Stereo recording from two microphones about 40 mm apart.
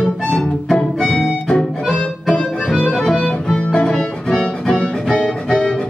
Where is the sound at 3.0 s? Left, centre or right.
Centre.